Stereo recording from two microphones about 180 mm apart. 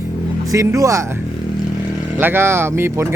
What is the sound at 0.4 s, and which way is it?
Speech, 15° right (ahead or behind).